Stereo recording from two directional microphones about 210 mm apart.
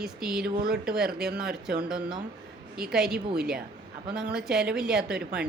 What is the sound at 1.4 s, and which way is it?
Speech, 5° right (ahead or behind).